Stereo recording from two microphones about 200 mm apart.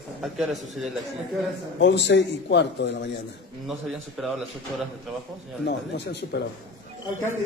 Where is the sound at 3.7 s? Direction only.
Centre (ahead or behind).